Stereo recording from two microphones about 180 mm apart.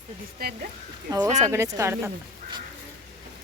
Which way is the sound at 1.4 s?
15° right (ahead or behind).